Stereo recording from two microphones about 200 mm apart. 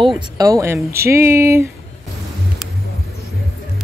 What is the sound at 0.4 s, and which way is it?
Speech, 15° right (ahead or behind).